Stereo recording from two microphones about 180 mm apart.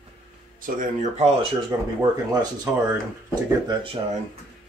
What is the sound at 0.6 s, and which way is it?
Speech, 45° right (ahead or behind).